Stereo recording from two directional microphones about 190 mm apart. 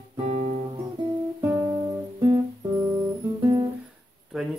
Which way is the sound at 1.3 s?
15° right (ahead or behind).